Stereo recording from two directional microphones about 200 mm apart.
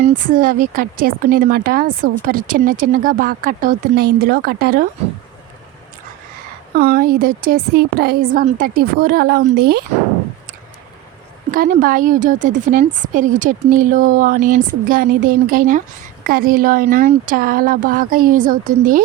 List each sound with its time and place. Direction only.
0.0 s speech: 45° right (ahead or behind)
6.7 s speech: 50° right (ahead or behind)
11.5 s speech: 45° right (ahead or behind)